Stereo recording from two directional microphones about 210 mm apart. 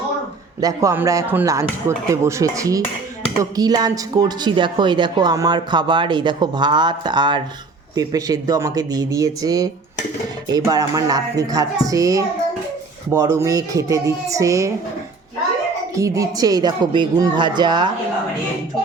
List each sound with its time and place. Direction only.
0.6 s speech: 15° right (ahead or behind)
16.0 s speech: 15° right (ahead or behind)